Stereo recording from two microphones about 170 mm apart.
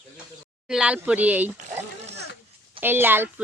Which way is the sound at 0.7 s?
5° right (ahead or behind).